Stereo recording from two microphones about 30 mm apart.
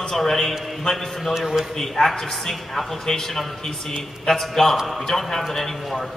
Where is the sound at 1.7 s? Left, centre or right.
Centre.